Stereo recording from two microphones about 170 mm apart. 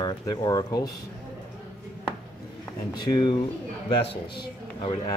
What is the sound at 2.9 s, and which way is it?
Speech, 25° left (ahead or behind).